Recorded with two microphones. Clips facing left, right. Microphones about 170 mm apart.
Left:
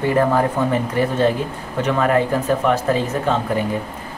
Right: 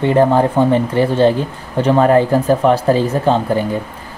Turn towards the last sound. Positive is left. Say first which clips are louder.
# right 5 dB
turn(degrees=-35)  # may be behind; listen again after turning